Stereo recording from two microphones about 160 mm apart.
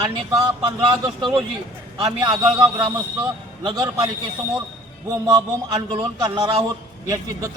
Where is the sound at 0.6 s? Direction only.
25° right (ahead or behind).